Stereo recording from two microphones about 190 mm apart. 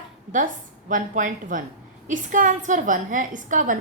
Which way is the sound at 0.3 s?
45° right (ahead or behind).